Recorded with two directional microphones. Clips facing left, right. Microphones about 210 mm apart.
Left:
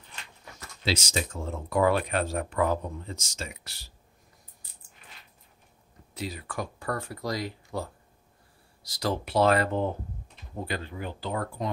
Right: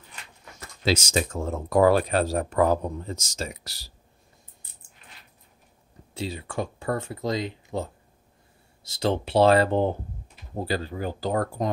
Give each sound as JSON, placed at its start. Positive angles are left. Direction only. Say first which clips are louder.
{"t": 0.8, "sound": "speech", "louder": "right 5 dB", "side_deg": -45}
{"t": 6.1, "sound": "speech", "louder": "right 4 dB", "side_deg": -30}